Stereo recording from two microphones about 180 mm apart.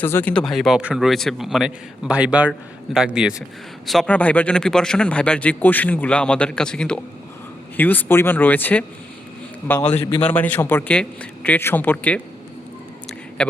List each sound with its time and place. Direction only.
0.0 s a man's voice: 10° left (ahead or behind)
13.4 s a man's voice: 5° left (ahead or behind)